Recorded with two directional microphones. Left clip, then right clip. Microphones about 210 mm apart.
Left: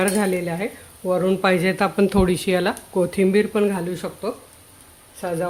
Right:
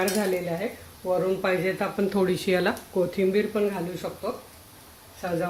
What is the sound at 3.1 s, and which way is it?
Speech, 40° left (ahead or behind).